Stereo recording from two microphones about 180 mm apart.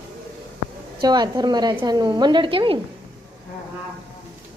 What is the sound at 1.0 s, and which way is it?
A woman's voice, 20° right (ahead or behind).